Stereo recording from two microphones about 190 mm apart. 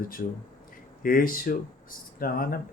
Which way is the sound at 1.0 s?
50° left (ahead or behind).